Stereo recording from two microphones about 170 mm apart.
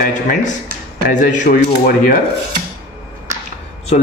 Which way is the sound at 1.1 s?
45° left (ahead or behind).